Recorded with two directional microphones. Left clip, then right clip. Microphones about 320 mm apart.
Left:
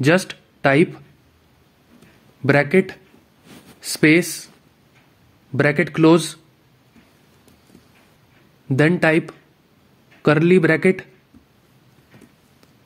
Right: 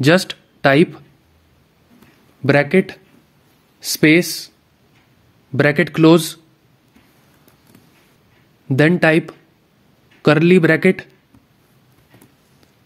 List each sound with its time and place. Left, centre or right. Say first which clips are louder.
0.0 s speech: right 3 dB; centre
2.4 s speech: right 2 dB; centre
5.5 s speech: right 3 dB; centre
8.6 s speech: right 3 dB; centre